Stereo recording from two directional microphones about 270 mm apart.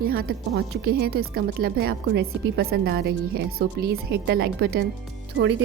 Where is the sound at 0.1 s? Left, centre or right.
Right.